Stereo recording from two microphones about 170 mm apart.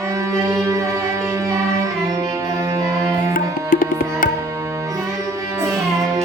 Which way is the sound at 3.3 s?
55° left (ahead or behind).